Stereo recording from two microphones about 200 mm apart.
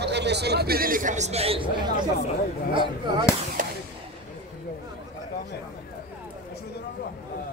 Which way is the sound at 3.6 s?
40° right (ahead or behind).